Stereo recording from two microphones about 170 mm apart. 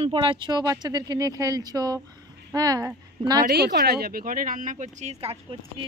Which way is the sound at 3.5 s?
70° right (ahead or behind).